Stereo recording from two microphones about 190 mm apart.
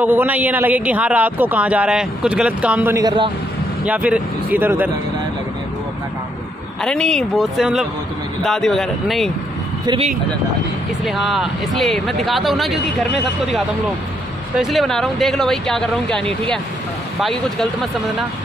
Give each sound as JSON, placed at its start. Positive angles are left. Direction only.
{"t": 0.0, "sound": "a man's voice", "side_deg": -10}
{"t": 3.8, "sound": "a man's voice", "side_deg": -5}
{"t": 6.8, "sound": "speech", "side_deg": 5}
{"t": 9.8, "sound": "speech", "side_deg": -30}
{"t": 11.1, "sound": "speech", "side_deg": 0}
{"t": 14.6, "sound": "speech", "side_deg": 0}